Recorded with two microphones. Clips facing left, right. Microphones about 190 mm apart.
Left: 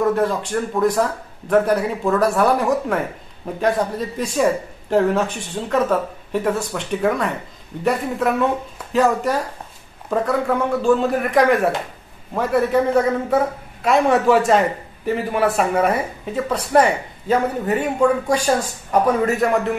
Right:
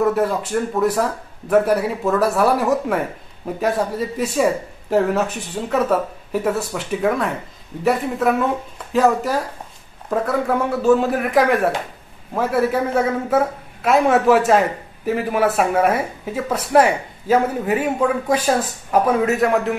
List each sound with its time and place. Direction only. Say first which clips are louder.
0.0 s speech: even; 5° right (ahead or behind)